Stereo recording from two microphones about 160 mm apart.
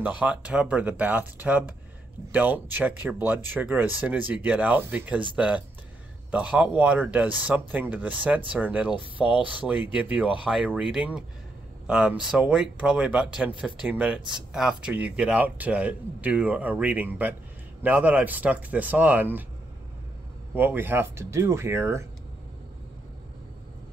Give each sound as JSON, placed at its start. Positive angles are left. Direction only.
{"t": 0.2, "sound": "speech", "side_deg": -10}
{"t": 20.5, "sound": "speech", "side_deg": -10}